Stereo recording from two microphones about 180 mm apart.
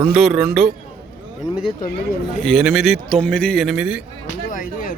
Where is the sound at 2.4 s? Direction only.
Centre (ahead or behind).